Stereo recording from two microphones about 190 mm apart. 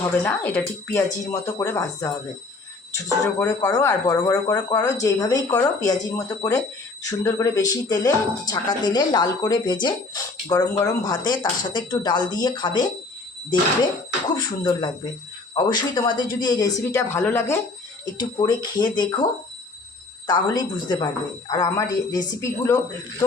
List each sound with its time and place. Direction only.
0.0 s speech: 10° left (ahead or behind)
3.4 s speech: 15° left (ahead or behind)
14.3 s speech: 20° left (ahead or behind)
20.2 s speech: 20° left (ahead or behind)